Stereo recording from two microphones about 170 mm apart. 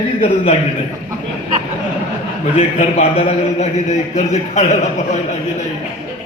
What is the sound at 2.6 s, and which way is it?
A man's voice, 40° left (ahead or behind).